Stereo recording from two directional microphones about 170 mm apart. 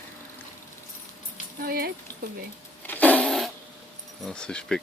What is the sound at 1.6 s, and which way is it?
Speech, 60° right (ahead or behind).